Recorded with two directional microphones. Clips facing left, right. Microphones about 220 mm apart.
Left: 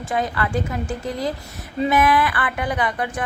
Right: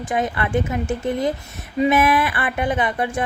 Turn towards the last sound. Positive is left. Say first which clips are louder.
# right 2 dB
turn(degrees=-25)  # may be behind; listen again after turning